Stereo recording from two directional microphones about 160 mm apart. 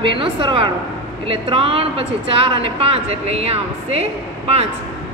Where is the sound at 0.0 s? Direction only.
30° right (ahead or behind).